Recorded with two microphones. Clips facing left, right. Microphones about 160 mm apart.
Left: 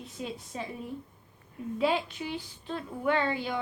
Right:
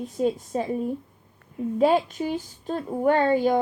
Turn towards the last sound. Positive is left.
turn(degrees=-45)  # may be behind; listen again after turning